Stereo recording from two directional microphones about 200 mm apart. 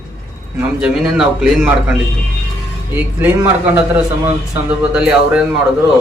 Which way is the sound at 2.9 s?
10° right (ahead or behind).